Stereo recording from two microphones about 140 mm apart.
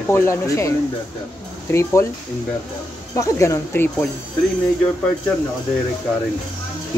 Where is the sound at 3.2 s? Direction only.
20° left (ahead or behind).